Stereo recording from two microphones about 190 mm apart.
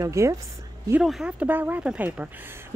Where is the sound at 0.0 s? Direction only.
15° right (ahead or behind).